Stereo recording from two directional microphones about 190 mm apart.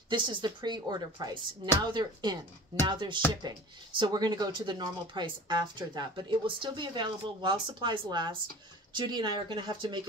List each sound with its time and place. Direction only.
0.1 s speech: 25° right (ahead or behind)